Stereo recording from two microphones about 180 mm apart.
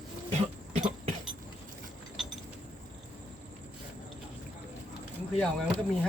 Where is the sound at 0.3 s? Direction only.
40° right (ahead or behind).